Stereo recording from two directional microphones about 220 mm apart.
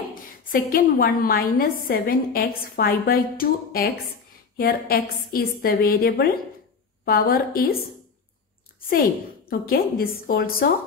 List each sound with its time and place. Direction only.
0.1 s a woman's voice: 40° left (ahead or behind)
9.5 s a woman's voice: 45° left (ahead or behind)